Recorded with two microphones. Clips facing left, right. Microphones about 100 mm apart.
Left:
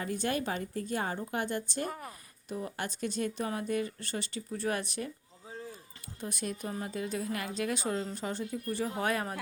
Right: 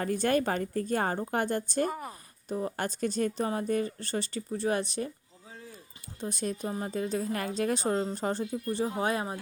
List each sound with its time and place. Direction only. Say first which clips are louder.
0.0 s speech: right 6 dB; 45° right (ahead or behind)
2.0 s a woman's voice: right 5 dB; 30° right (ahead or behind)
6.1 s a woman's voice: right 4 dB; 30° right (ahead or behind)
8.6 s speech: right 2 dB; 25° right (ahead or behind)